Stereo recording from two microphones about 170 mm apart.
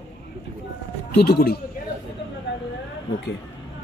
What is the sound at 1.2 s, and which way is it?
Speech, 65° left (ahead or behind).